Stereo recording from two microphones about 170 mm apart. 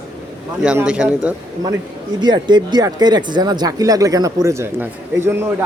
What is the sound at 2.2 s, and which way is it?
Speech, 25° right (ahead or behind).